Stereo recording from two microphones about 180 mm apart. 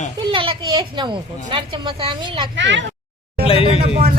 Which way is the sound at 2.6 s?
90° right.